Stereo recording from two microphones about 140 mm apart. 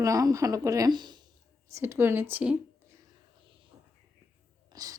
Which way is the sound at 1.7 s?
20° right (ahead or behind).